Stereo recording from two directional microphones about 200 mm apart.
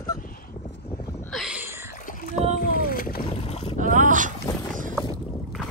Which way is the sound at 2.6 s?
45° left (ahead or behind).